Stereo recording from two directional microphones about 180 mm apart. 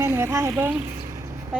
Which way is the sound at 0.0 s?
15° right (ahead or behind).